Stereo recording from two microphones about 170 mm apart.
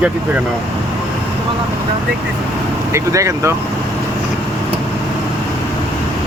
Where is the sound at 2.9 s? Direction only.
20° right (ahead or behind).